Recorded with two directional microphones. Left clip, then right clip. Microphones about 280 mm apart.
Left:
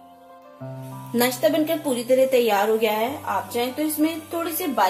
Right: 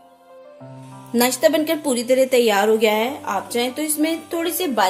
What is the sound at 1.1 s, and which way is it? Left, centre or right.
A woman's voice, right.